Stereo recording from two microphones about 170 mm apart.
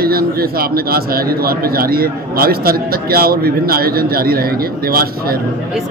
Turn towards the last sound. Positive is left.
turn(degrees=-60)  # may be behind; listen again after turning